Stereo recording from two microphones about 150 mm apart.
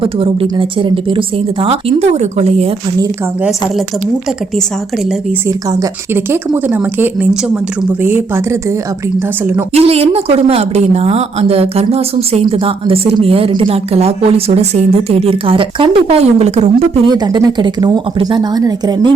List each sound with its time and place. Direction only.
0.0 s a woman's voice: 35° right (ahead or behind)
5.5 s speech: 20° right (ahead or behind)
9.7 s a woman's voice: 45° right (ahead or behind)
17.1 s speech: 25° right (ahead or behind)